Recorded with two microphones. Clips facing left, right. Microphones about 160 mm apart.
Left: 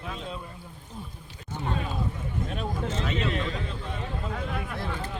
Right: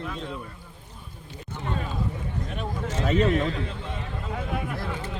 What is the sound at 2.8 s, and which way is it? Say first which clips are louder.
Speech: right 8 dB; 40° right (ahead or behind).